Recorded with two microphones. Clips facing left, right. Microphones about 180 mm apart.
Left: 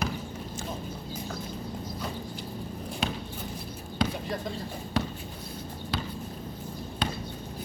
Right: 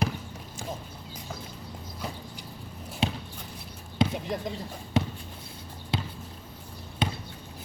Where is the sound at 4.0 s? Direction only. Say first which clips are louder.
Right 3 dB; 25° right (ahead or behind).